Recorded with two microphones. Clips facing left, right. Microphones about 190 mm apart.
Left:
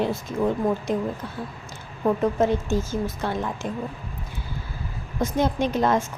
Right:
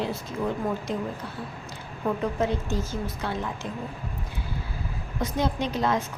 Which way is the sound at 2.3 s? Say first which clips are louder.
Left 5 dB; 45° left (ahead or behind).